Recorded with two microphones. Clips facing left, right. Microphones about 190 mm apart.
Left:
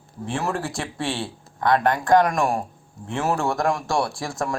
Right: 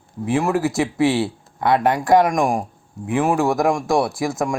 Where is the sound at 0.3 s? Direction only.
15° right (ahead or behind).